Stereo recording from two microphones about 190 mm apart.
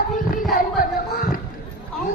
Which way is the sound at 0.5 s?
45° left (ahead or behind).